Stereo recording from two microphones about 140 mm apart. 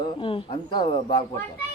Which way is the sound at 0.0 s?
40° left (ahead or behind).